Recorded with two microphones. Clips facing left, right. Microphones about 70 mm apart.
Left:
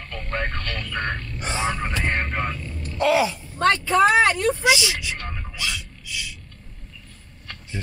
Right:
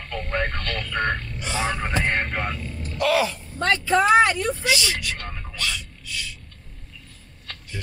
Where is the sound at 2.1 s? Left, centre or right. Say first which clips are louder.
Even; centre.